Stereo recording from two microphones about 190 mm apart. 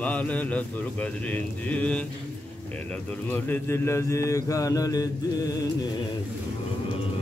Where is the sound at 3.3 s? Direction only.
10° left (ahead or behind).